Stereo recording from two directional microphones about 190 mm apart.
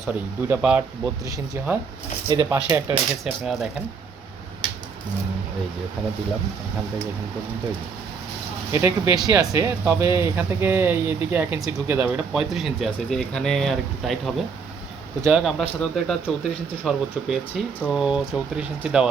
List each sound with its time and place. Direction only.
0.0 s speech: 10° right (ahead or behind)
2.3 s speech: 20° right (ahead or behind)
8.7 s speech: 15° right (ahead or behind)